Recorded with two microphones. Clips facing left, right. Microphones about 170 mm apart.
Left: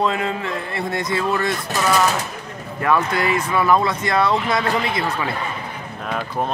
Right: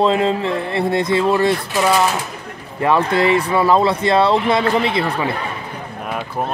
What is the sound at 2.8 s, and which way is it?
Speech, 25° right (ahead or behind).